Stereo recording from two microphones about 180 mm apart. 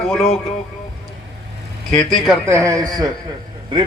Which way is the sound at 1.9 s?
5° left (ahead or behind).